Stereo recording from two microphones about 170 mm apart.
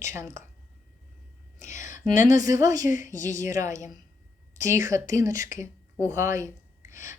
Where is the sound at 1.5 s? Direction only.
15° right (ahead or behind).